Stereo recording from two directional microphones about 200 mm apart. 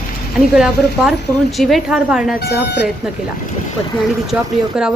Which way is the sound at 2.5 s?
55° left (ahead or behind).